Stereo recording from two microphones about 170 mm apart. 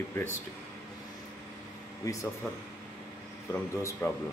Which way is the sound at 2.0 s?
20° left (ahead or behind).